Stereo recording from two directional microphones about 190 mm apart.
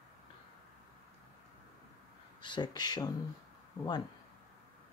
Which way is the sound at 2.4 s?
25° left (ahead or behind).